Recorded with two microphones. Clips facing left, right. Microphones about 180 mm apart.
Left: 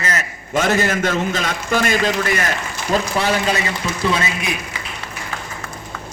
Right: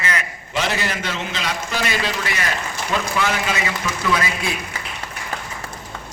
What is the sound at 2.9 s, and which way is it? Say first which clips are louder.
Speech: left 4 dB; 35° left (ahead or behind).